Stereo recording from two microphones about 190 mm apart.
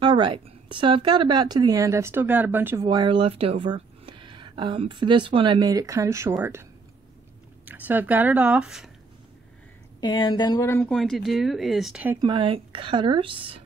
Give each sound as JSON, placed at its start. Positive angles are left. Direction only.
{"t": 0.0, "sound": "speech", "side_deg": -25}
{"t": 7.6, "sound": "speech", "side_deg": -10}
{"t": 9.9, "sound": "speech", "side_deg": 25}
{"t": 12.2, "sound": "speech", "side_deg": -25}